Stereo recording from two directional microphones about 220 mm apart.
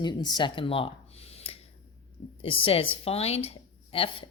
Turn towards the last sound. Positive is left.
turn(degrees=25)  # may be behind; listen again after turning